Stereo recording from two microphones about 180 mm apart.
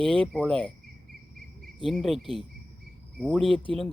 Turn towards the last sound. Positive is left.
turn(degrees=-30)  # may be behind; listen again after turning